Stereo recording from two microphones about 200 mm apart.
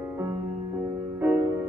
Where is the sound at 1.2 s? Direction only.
10° right (ahead or behind).